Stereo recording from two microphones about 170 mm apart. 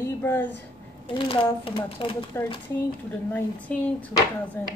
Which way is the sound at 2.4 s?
15° left (ahead or behind).